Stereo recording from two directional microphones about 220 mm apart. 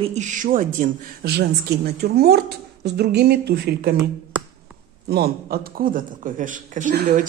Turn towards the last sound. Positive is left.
turn(degrees=-40)  # may be behind; listen again after turning